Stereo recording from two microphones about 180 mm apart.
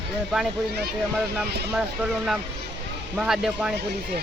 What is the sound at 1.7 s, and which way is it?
Speech, 5° right (ahead or behind).